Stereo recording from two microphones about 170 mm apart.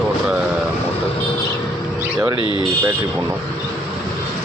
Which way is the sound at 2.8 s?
15° right (ahead or behind).